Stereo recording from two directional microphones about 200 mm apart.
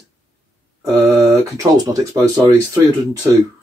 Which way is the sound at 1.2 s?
20° right (ahead or behind).